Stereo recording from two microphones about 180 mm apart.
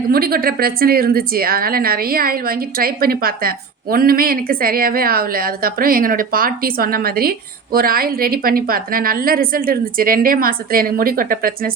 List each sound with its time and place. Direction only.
0.1 s a woman's voice: 55° right (ahead or behind)